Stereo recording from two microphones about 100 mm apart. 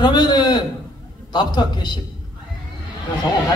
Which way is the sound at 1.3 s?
45° left (ahead or behind).